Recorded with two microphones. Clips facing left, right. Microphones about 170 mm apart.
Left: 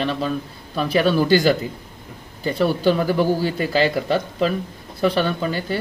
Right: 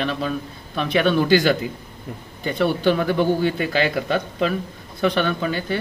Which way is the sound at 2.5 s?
5° left (ahead or behind).